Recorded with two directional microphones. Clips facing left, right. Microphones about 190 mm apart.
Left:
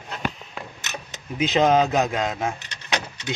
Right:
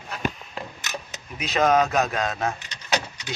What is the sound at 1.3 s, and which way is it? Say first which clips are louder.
A man's voice: left 2 dB; 25° left (ahead or behind).